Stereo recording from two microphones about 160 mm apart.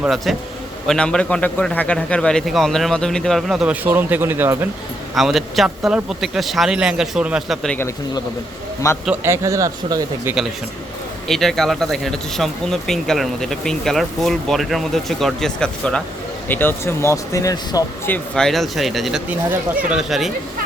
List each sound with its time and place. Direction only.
0.0 s speech: centre (ahead or behind)
3.8 s speech: 15° right (ahead or behind)
5.1 s speech: centre (ahead or behind)
7.8 s speech: 20° left (ahead or behind)
9.2 s speech: 15° right (ahead or behind)
11.3 s speech: centre (ahead or behind); by 18.1 s 25° left (ahead or behind)
18.1 s speech: 5° left (ahead or behind)